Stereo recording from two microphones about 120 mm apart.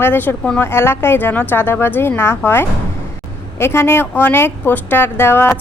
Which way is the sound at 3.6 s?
20° left (ahead or behind).